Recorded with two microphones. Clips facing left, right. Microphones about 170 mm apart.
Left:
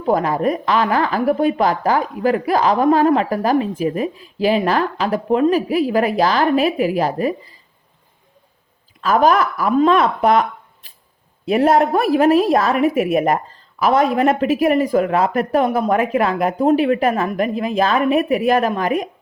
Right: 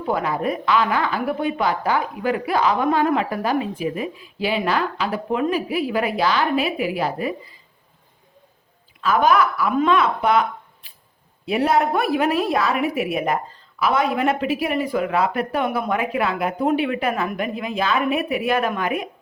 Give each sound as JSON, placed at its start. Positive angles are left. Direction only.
{"t": 0.1, "sound": "a woman's voice", "side_deg": 40}
{"t": 9.0, "sound": "a woman's voice", "side_deg": 40}
{"t": 11.4, "sound": "a woman's voice", "side_deg": 45}